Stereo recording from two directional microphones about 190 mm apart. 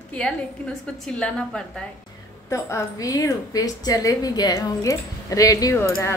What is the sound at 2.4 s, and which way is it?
A woman's voice, 15° left (ahead or behind).